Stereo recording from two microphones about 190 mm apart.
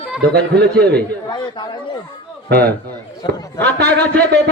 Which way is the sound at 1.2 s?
20° left (ahead or behind).